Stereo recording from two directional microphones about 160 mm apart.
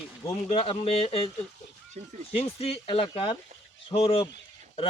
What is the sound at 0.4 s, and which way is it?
Speech, 35° left (ahead or behind).